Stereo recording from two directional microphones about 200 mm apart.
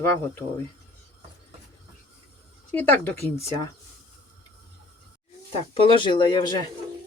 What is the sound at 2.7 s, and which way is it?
Speech, 10° left (ahead or behind).